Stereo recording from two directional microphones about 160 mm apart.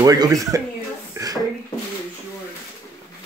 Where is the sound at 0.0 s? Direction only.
20° right (ahead or behind).